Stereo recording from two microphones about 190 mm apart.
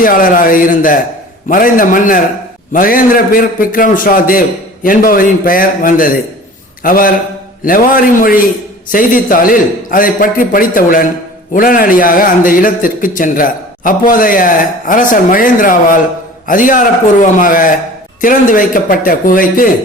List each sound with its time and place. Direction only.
0.0 s a man's voice: 45° left (ahead or behind)